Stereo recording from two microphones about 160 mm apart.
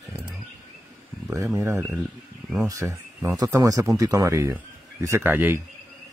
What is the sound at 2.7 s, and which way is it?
Speech, 20° right (ahead or behind).